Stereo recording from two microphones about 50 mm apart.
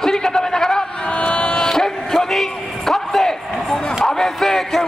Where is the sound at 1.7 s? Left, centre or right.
Centre.